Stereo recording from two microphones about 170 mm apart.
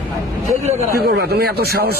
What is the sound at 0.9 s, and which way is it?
Speech, 70° right (ahead or behind).